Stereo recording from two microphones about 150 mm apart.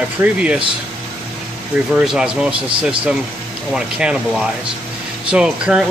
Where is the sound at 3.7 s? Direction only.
5° right (ahead or behind).